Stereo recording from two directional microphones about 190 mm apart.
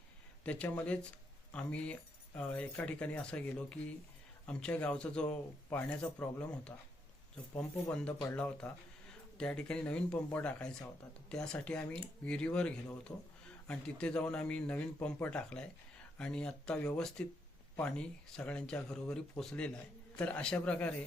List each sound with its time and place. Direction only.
0.4 s speech: 5° left (ahead or behind)
7.9 s speech: 10° left (ahead or behind)